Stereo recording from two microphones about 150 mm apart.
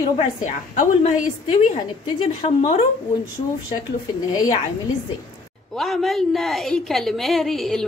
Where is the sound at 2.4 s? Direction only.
50° left (ahead or behind).